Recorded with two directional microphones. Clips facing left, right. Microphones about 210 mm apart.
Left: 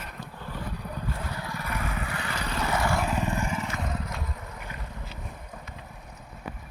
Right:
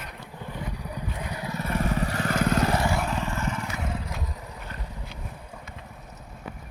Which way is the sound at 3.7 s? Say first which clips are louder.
Even; 10° right (ahead or behind).